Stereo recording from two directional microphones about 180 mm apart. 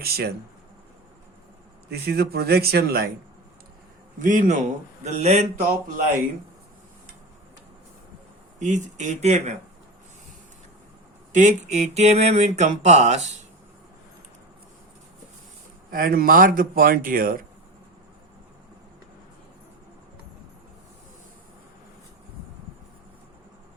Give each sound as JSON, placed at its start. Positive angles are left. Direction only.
{"t": 0.0, "sound": "speech", "side_deg": -60}
{"t": 1.9, "sound": "speech", "side_deg": -60}
{"t": 4.2, "sound": "speech", "side_deg": -45}
{"t": 8.5, "sound": "speech", "side_deg": -40}
{"t": 11.3, "sound": "speech", "side_deg": -40}
{"t": 15.9, "sound": "speech", "side_deg": -55}